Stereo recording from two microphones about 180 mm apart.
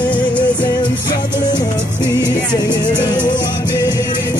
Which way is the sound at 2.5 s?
25° left (ahead or behind).